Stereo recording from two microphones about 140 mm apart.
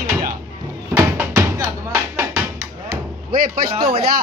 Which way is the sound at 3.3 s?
90° right.